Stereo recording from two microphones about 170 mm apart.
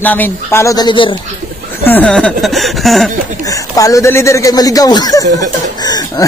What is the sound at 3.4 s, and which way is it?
Speech, 20° left (ahead or behind).